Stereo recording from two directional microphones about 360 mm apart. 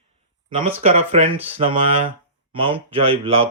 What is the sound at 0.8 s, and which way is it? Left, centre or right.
Speech, centre.